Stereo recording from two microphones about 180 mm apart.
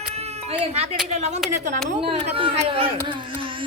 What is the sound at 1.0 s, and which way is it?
Speech, 40° right (ahead or behind).